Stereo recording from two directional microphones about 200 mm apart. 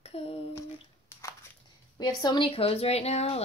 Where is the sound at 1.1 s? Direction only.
15° left (ahead or behind).